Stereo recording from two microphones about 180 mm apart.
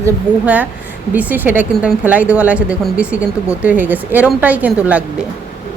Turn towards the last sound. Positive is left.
turn(degrees=-10)  # may be behind; listen again after turning